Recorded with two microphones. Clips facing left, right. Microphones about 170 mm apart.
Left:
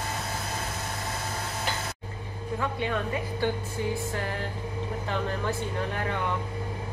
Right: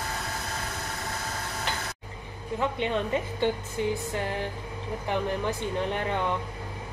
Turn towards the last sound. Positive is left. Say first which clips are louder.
# right 2 dB
turn(degrees=-15)  # may be behind; listen again after turning